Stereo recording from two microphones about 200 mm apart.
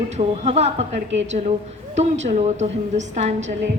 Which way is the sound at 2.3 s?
35° right (ahead or behind).